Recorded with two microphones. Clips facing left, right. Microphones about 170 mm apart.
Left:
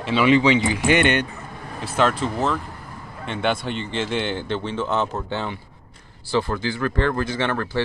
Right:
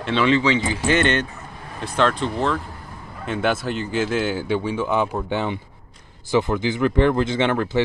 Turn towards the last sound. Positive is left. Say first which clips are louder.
# right 4 dB
turn(degrees=-15)  # may be behind; listen again after turning